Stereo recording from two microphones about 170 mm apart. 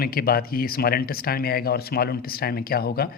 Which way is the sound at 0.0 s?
60° left (ahead or behind).